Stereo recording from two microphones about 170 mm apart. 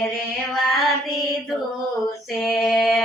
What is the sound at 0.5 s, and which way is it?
Mantra, centre (ahead or behind).